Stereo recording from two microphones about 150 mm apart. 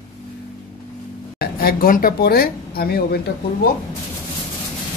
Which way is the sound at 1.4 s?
75° left (ahead or behind).